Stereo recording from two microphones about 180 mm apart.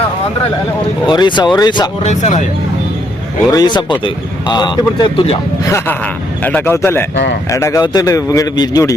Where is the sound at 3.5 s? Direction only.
25° left (ahead or behind).